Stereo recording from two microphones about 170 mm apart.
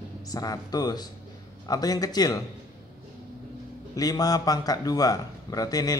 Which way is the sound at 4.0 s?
20° left (ahead or behind).